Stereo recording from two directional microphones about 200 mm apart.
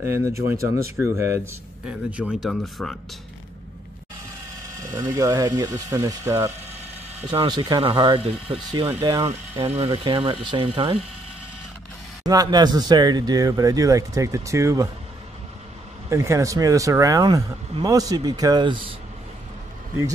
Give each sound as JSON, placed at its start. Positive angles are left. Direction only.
{"t": 0.0, "sound": "speech", "side_deg": -15}
{"t": 4.9, "sound": "speech", "side_deg": -20}
{"t": 7.2, "sound": "speech", "side_deg": -25}
{"t": 9.6, "sound": "speech", "side_deg": -30}
{"t": 12.3, "sound": "speech", "side_deg": -20}
{"t": 16.1, "sound": "speech", "side_deg": -15}